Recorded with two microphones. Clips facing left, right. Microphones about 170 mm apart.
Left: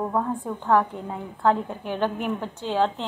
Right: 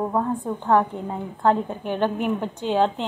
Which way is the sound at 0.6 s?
20° right (ahead or behind).